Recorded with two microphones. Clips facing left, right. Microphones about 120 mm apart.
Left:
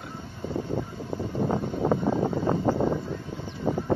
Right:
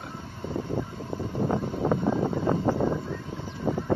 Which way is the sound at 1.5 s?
15° left (ahead or behind).